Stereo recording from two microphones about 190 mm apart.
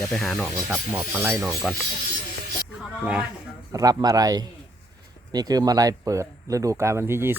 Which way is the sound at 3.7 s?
20° right (ahead or behind).